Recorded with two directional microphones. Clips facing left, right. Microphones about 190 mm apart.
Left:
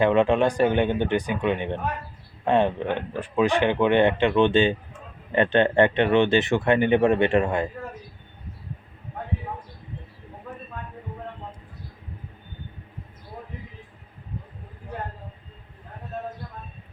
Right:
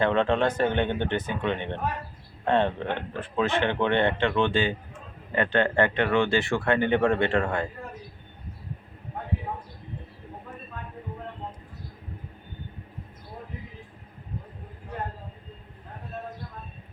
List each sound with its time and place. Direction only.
0.0 s speech: 15° left (ahead or behind)